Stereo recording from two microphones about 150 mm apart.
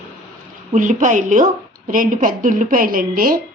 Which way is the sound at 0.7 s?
55° right (ahead or behind).